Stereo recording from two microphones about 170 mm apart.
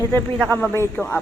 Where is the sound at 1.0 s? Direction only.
5° left (ahead or behind).